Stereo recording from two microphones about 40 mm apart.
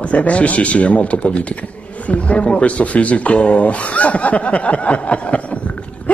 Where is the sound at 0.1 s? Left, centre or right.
Left.